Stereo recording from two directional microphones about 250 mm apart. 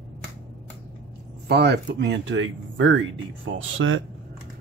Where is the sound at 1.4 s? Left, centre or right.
Right.